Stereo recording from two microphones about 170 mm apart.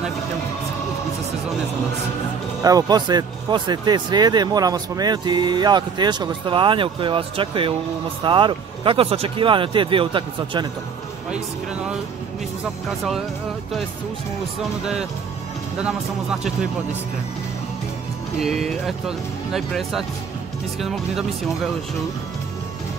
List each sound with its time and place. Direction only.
2.6 s speech: 20° right (ahead or behind)
14.6 s speech: 5° right (ahead or behind)
18.4 s speech: centre (ahead or behind)